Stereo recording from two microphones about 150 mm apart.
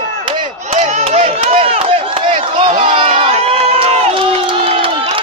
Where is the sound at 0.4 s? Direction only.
45° right (ahead or behind).